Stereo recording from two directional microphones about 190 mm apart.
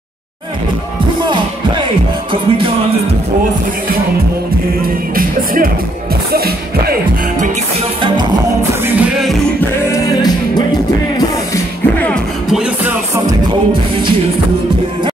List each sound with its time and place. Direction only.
1.2 s speech: 25° right (ahead or behind)
2.3 s music: 30° right (ahead or behind)
5.1 s speech: 50° right (ahead or behind)
6.3 s music: 55° right (ahead or behind)
8.8 s music: 10° right (ahead or behind)
9.6 s music: 15° left (ahead or behind)
12.4 s music: centre (ahead or behind)